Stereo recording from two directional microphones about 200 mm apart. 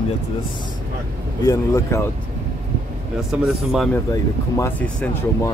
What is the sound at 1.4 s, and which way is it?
Speech, 15° left (ahead or behind).